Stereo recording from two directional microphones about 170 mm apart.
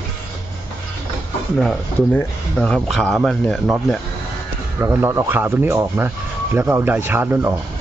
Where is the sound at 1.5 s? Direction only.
5° left (ahead or behind).